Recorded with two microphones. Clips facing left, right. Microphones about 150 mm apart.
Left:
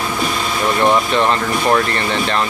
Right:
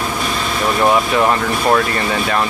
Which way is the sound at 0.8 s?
10° right (ahead or behind).